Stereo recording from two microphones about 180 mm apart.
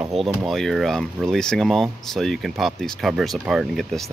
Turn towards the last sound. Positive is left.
turn(degrees=0)  # may be behind; listen again after turning